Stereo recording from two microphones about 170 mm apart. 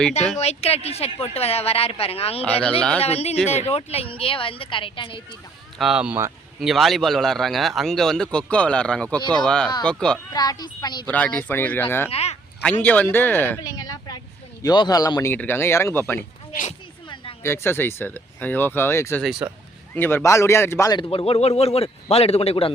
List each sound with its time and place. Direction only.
0.3 s speech: 35° left (ahead or behind)
2.4 s speech: 10° left (ahead or behind)
3.0 s speech: 40° left (ahead or behind)
5.8 s speech: 5° right (ahead or behind)
10.3 s speech: 25° left (ahead or behind)
11.0 s speech: 10° left (ahead or behind)
12.1 s speech: 40° left (ahead or behind)
12.6 s speech: 10° left (ahead or behind)
13.6 s a sound: 20° left (ahead or behind)
14.6 s speech: 25° left (ahead or behind)
17.4 s speech: 15° left (ahead or behind)
19.2 s speech: 5° right (ahead or behind)
19.9 s speech: 10° left (ahead or behind)
21.1 s speech: 35° left (ahead or behind)